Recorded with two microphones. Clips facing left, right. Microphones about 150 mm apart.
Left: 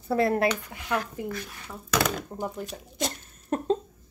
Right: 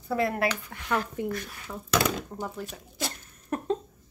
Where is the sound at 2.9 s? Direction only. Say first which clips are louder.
Left 4 dB; 25° left (ahead or behind).